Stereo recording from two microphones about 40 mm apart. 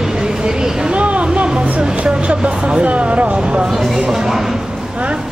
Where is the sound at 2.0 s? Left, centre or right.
Right.